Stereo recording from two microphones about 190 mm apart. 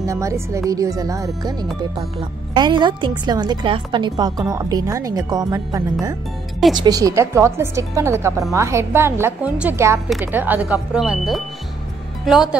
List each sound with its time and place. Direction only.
0.0 s a woman's voice: 15° right (ahead or behind)